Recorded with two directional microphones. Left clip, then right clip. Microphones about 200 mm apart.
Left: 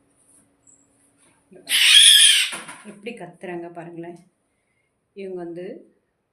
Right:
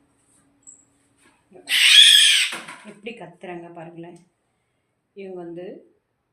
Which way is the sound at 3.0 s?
35° left (ahead or behind).